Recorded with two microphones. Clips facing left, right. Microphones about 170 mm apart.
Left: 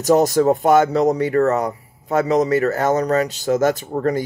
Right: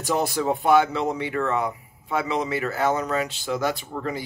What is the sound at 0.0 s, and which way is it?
Speech, 40° left (ahead or behind).